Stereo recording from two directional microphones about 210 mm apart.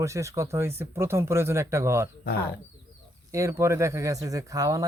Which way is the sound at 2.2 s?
50° left (ahead or behind).